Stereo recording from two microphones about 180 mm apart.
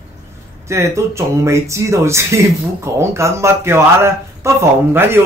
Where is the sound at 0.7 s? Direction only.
15° right (ahead or behind).